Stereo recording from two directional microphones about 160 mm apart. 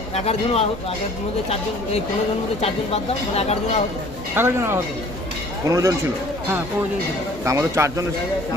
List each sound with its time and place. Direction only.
0.1 s speech: 40° left (ahead or behind)
2.6 s speech: 40° left (ahead or behind)
4.4 s speech: 15° right (ahead or behind)
7.4 s speech: 20° right (ahead or behind)